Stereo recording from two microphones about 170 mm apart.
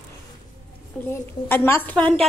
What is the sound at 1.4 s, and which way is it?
Speech, 15° left (ahead or behind).